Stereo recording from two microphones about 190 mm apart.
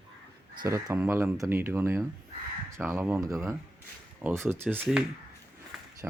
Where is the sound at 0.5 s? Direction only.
20° right (ahead or behind).